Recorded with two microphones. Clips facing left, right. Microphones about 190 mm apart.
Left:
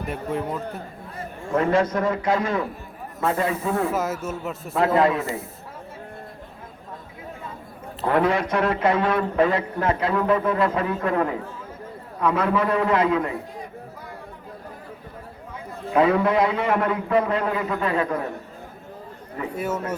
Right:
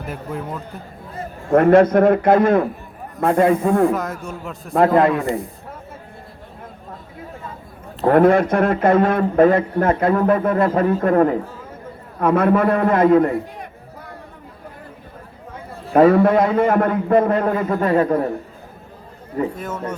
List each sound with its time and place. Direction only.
0.0 s a man's voice: centre (ahead or behind)
1.5 s a man's voice: 60° right (ahead or behind)
3.9 s a man's voice: 5° left (ahead or behind)
4.7 s a man's voice: 50° right (ahead or behind)
8.0 s a man's voice: 50° right (ahead or behind)
12.2 s a man's voice: 55° right (ahead or behind)
15.9 s a man's voice: 45° right (ahead or behind)
19.5 s a man's voice: 10° left (ahead or behind)